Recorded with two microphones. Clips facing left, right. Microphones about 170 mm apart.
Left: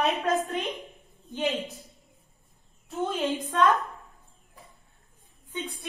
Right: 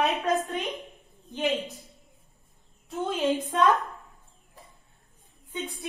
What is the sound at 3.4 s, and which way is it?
Speech, 15° right (ahead or behind).